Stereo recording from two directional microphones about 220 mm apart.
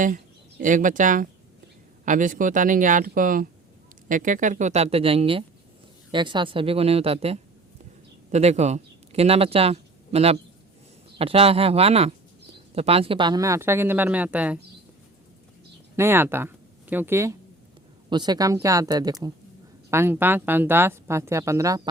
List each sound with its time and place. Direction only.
0.6 s speech: 35° right (ahead or behind); by 14.6 s 5° right (ahead or behind)
16.0 s speech: 10° right (ahead or behind)